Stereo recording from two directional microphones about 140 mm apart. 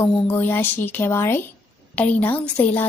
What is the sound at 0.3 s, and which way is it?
A woman's voice, 15° left (ahead or behind).